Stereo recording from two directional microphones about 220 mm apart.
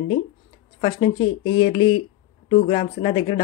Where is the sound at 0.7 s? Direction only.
20° left (ahead or behind).